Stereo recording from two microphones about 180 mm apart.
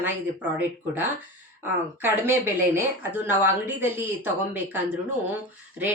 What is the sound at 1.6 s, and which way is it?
Speech, 10° right (ahead or behind).